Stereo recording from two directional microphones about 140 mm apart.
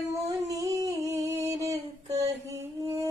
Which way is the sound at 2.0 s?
50° right (ahead or behind).